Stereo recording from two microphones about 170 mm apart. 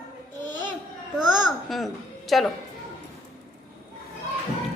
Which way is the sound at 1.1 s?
Centre (ahead or behind).